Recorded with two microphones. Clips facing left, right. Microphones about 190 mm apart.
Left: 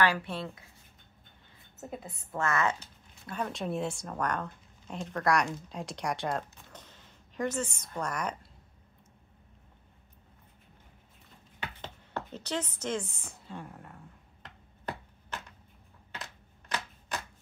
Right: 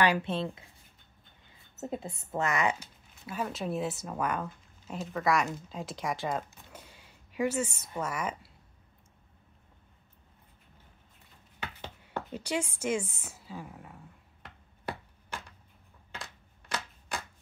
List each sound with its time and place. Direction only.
0.0 s a woman's voice: 20° right (ahead or behind)
1.8 s a woman's voice: 25° right (ahead or behind)
2.4 s speech: 15° right (ahead or behind)
11.8 s a sound: 10° right (ahead or behind)